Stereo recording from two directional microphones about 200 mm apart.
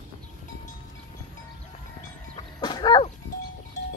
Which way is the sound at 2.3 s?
20° left (ahead or behind).